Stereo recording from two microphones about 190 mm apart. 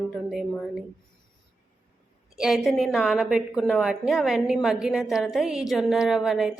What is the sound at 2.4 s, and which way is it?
A woman's voice, 5° right (ahead or behind).